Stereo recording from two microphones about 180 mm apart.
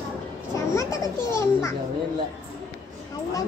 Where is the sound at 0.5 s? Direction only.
15° left (ahead or behind).